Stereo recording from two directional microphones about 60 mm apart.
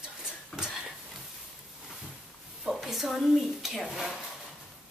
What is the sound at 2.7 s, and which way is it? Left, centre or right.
A woman's voice, centre.